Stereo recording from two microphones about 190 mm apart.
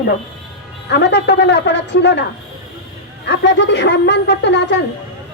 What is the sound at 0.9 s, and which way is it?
Speech, 65° left (ahead or behind).